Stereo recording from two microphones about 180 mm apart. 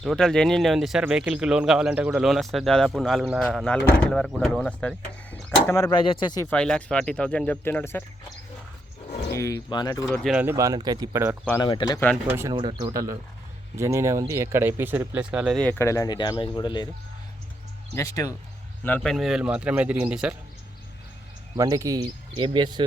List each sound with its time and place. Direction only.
0.0 s speech: centre (ahead or behind); by 6.5 s 25° left (ahead or behind)
6.5 s speech: 5° left (ahead or behind)
9.3 s speech: 15° left (ahead or behind)
10.1 s speech: centre (ahead or behind)
10.4 s speech: 15° right (ahead or behind)
11.6 s speech: 25° left (ahead or behind)
12.3 s speech: 15° right (ahead or behind)
12.5 s speech: 25° right (ahead or behind); by 15.5 s 5° right (ahead or behind)
15.5 s speech: 10° left (ahead or behind)
17.9 s speech: 15° left (ahead or behind)
18.9 s speech: 5° left (ahead or behind)
21.5 s speech: 20° right (ahead or behind)